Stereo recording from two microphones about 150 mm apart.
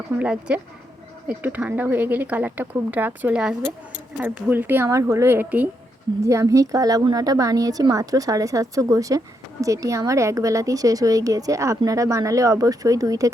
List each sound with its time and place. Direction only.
0.2 s speech: 10° right (ahead or behind)